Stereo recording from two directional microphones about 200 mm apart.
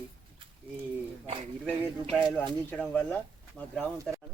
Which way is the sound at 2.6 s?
5° left (ahead or behind).